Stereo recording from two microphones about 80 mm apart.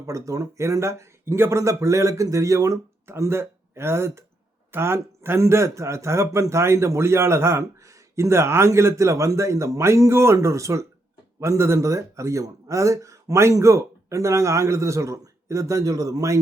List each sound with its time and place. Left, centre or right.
0.0 s a man's voice: right